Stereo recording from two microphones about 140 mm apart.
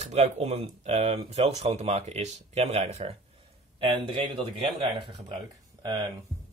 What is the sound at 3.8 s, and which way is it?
Speech, 40° right (ahead or behind).